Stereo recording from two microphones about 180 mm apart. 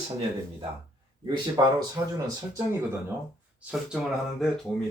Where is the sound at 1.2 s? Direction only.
25° right (ahead or behind).